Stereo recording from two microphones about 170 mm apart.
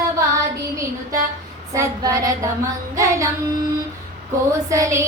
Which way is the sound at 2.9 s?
20° right (ahead or behind).